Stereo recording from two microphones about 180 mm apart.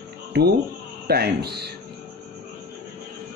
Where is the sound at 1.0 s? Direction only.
60° right (ahead or behind).